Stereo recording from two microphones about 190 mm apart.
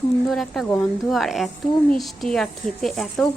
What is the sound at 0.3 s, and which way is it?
Speech, centre (ahead or behind).